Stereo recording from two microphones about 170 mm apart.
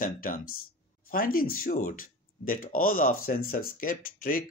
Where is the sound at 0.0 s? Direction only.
55° left (ahead or behind).